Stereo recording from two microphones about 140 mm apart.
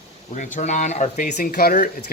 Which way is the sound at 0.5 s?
60° left (ahead or behind).